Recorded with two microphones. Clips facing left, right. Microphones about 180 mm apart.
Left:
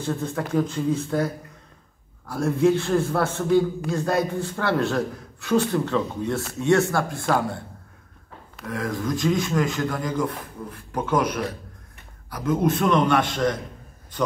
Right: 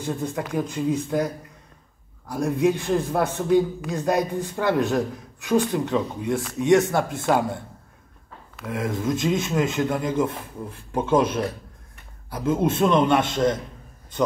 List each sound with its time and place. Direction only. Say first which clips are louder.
0.0 s a man's voice: even; 15° right (ahead or behind)
8.6 s speech: right 1 dB; 20° right (ahead or behind)